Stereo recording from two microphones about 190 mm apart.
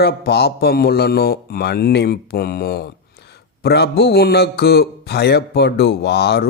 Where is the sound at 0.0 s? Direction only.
55° left (ahead or behind).